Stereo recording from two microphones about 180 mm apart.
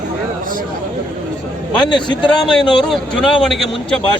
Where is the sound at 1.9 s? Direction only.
25° left (ahead or behind).